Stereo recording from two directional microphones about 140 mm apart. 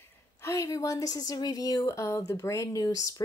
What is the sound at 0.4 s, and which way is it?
A woman's voice, 20° left (ahead or behind).